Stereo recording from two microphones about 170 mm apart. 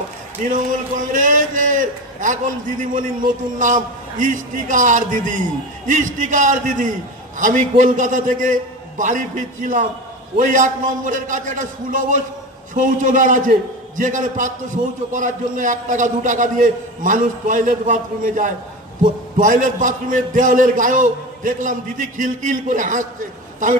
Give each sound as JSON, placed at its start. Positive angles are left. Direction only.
{"t": 0.4, "sound": "a man's voice", "side_deg": -50}